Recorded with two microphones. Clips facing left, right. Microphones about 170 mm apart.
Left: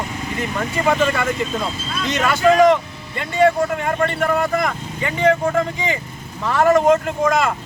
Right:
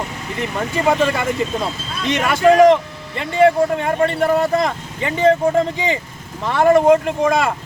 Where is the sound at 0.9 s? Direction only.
20° right (ahead or behind).